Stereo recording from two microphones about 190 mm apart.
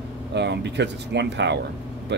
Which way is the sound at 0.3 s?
65° right (ahead or behind).